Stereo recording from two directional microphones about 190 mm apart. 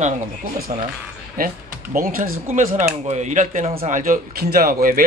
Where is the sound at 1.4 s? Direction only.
50° right (ahead or behind).